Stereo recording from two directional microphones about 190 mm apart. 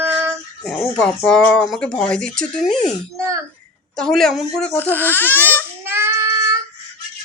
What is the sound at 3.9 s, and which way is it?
Speech, 5° left (ahead or behind).